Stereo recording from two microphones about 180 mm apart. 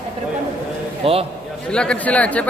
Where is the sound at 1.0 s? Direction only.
30° right (ahead or behind).